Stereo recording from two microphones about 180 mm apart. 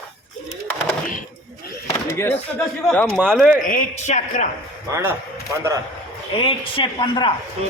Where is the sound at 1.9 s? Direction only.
15° left (ahead or behind).